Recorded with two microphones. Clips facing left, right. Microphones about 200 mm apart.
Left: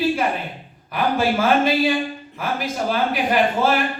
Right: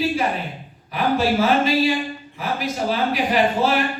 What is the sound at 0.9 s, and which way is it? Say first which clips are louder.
Speech: right 1 dB; 50° left (ahead or behind).